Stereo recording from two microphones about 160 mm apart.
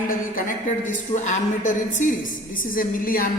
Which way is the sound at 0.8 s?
50° left (ahead or behind).